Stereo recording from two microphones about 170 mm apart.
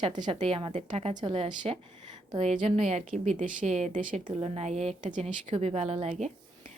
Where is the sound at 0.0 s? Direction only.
30° right (ahead or behind); by 4.2 s 45° right (ahead or behind).